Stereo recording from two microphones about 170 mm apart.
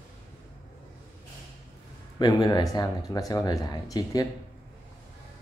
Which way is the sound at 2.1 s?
25° left (ahead or behind).